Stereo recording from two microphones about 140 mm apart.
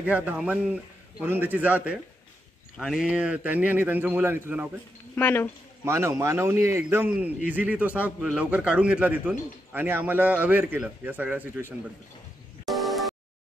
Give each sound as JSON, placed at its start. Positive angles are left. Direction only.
{"t": 0.0, "sound": "a man's voice", "side_deg": -10}
{"t": 2.8, "sound": "a man's voice", "side_deg": 0}
{"t": 5.1, "sound": "speech", "side_deg": 15}
{"t": 5.9, "sound": "a man's voice", "side_deg": -20}
{"t": 12.6, "sound": "music", "side_deg": 0}